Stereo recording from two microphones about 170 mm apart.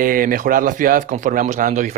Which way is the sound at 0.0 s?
55° right (ahead or behind).